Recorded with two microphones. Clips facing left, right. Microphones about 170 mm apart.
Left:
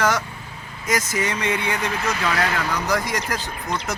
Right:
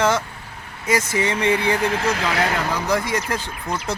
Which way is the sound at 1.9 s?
80° right.